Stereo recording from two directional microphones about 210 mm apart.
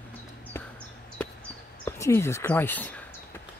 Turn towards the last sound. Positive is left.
turn(degrees=10)  # may be behind; listen again after turning